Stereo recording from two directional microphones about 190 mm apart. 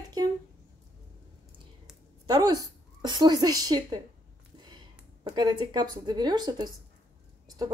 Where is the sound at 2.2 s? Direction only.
20° right (ahead or behind).